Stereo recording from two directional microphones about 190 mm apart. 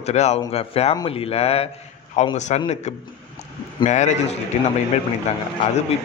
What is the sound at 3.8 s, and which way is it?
Speech, 40° left (ahead or behind).